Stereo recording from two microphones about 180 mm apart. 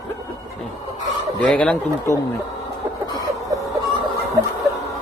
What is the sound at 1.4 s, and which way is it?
Fowl, 5° left (ahead or behind).